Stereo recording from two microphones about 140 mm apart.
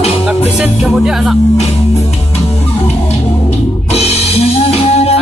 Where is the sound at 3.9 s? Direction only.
45° left (ahead or behind).